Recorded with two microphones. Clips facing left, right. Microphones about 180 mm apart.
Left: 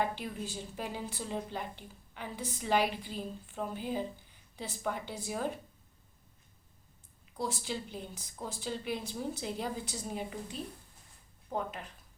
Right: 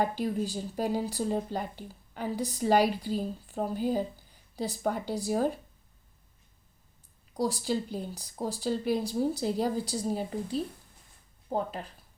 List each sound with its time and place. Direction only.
0.0 s speech: 40° right (ahead or behind)
7.3 s speech: 35° right (ahead or behind)